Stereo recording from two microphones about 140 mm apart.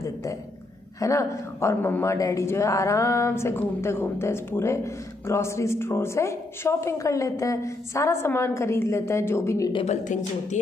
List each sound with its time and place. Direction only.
0.0 s a sound: 25° left (ahead or behind)
0.9 s a woman's voice: 25° left (ahead or behind)
9.8 s speech: 60° left (ahead or behind)